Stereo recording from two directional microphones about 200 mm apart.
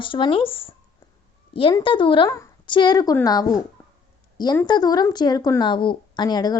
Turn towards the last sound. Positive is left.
turn(degrees=20)  # may be behind; listen again after turning